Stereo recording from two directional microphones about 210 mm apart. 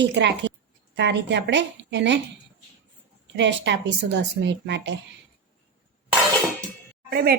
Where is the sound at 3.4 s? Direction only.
55° right (ahead or behind).